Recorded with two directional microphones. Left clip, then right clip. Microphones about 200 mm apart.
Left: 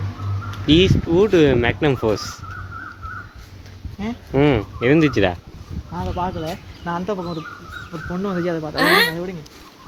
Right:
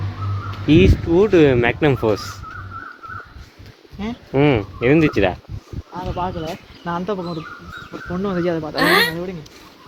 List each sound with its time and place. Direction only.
0.7 s speech: 5° right (ahead or behind)
4.0 s speech: 5° right (ahead or behind)
8.1 s speech: 25° right (ahead or behind)
8.7 s speech: centre (ahead or behind)